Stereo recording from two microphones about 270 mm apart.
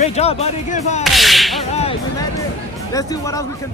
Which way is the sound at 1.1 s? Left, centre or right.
Centre.